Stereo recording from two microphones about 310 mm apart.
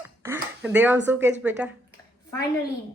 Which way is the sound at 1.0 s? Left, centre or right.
Centre.